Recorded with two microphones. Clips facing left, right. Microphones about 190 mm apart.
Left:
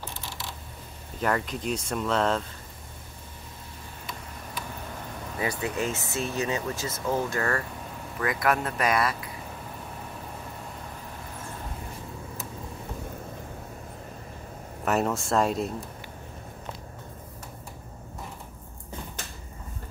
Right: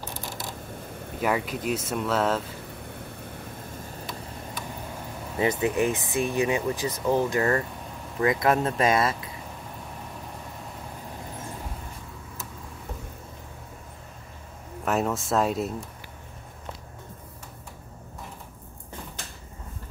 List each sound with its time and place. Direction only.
1.2 s speech: 5° right (ahead or behind)
5.4 s speech: 20° right (ahead or behind)
14.9 s speech: centre (ahead or behind)